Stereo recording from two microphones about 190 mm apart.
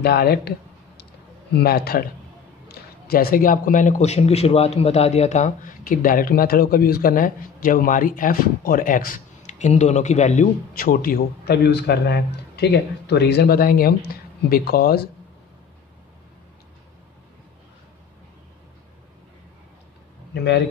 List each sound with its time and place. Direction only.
0.0 s a man's voice: 55° left (ahead or behind)